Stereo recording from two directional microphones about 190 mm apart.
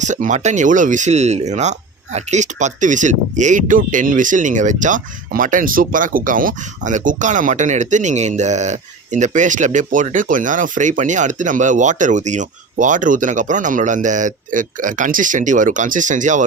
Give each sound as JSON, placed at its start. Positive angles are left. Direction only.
{"t": 0.0, "sound": "speech", "side_deg": -40}